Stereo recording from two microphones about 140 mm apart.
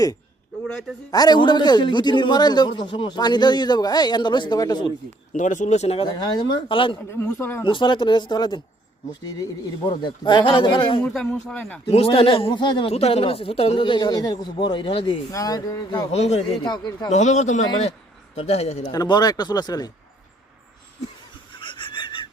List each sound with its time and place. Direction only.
0.7 s speech: 5° left (ahead or behind)
1.1 s a man's voice: 30° left (ahead or behind)
5.3 s speech: 65° left (ahead or behind); by 6.9 s 35° left (ahead or behind)
7.1 s speech: 20° left (ahead or behind)
7.6 s a man's voice: 35° left (ahead or behind)
11.0 s speech: 5° left (ahead or behind)
11.9 s a man's voice: 45° left (ahead or behind)
12.9 s a man's voice: 45° left (ahead or behind)
15.3 s speech: 25° left (ahead or behind)
16.1 s speech: 50° left (ahead or behind)
16.6 s a man's voice: 30° left (ahead or behind)
17.1 s speech: 55° left (ahead or behind)
18.8 s speech: 30° left (ahead or behind)
21.6 s a sound: 35° left (ahead or behind)